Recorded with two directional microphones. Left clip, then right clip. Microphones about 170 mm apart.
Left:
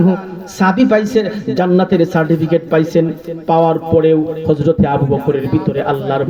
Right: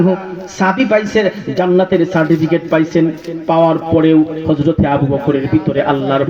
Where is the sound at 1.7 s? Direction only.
25° right (ahead or behind).